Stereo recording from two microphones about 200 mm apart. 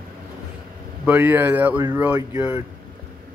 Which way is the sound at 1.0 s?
10° right (ahead or behind).